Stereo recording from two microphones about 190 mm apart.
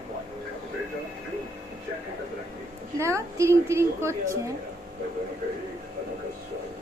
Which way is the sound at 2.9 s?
15° right (ahead or behind).